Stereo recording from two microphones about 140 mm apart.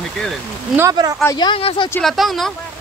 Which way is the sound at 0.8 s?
25° right (ahead or behind).